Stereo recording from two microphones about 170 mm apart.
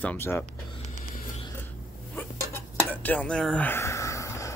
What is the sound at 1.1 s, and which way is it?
Music, 40° left (ahead or behind).